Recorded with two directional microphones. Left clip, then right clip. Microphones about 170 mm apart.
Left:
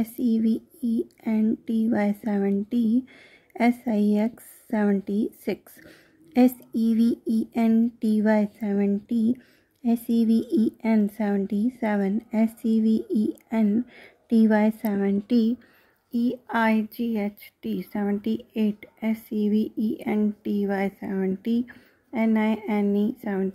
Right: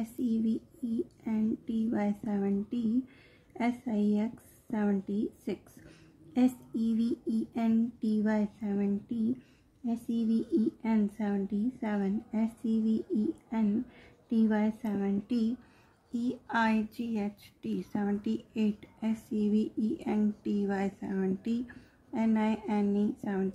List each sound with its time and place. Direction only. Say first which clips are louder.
0.0 s speech: left 8 dB; 45° left (ahead or behind)